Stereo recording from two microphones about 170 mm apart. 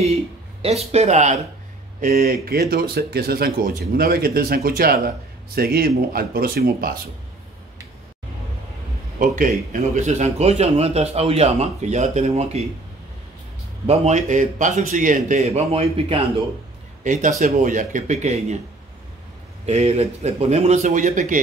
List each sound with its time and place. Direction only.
0.0 s speech: 35° right (ahead or behind); by 7.0 s 60° right (ahead or behind)
9.2 s a man's voice: 50° right (ahead or behind)
13.8 s speech: 40° right (ahead or behind)
17.0 s speech: 50° right (ahead or behind)
19.6 s a man's voice: 40° right (ahead or behind)